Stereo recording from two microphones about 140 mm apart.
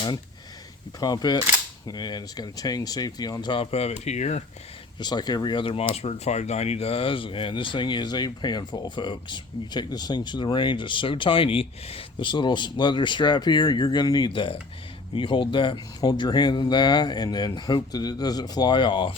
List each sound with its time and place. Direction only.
0.9 s speech: 30° left (ahead or behind); by 4.4 s 50° left (ahead or behind)
4.9 s speech: 30° left (ahead or behind)